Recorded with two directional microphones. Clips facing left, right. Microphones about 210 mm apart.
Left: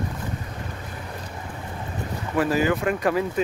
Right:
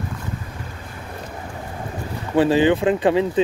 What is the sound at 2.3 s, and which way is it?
Speech, 30° right (ahead or behind).